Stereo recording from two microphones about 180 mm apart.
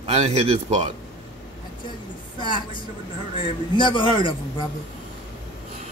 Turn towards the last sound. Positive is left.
turn(degrees=25)  # may be behind; listen again after turning